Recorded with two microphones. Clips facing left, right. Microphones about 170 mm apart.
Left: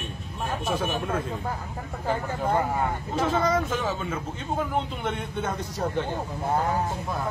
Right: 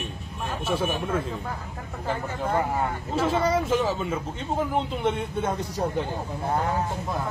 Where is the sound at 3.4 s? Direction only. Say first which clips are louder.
Right 3 dB; 10° right (ahead or behind).